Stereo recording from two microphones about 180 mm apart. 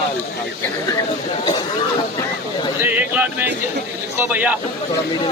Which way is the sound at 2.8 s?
10° right (ahead or behind).